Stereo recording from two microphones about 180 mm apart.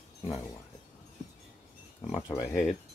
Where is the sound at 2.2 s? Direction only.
20° left (ahead or behind).